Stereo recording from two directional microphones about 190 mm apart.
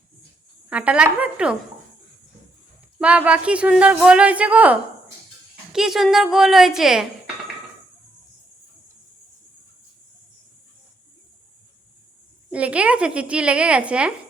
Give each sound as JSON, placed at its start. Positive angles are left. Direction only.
{"t": 0.7, "sound": "speech", "side_deg": -5}
{"t": 3.0, "sound": "a woman's voice", "side_deg": -5}
{"t": 12.5, "sound": "a woman's voice", "side_deg": -5}